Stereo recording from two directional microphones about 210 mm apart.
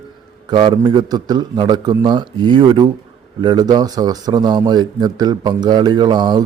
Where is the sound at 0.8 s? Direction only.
20° right (ahead or behind).